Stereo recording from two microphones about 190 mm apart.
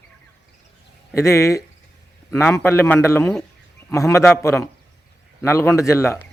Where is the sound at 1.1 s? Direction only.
15° left (ahead or behind).